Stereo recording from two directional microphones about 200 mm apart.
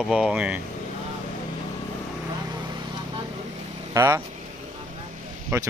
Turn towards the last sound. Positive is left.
turn(degrees=-15)  # may be behind; listen again after turning